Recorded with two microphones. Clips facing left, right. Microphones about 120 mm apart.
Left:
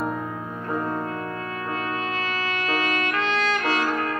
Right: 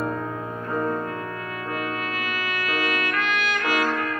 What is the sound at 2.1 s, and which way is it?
Music, 30° left (ahead or behind).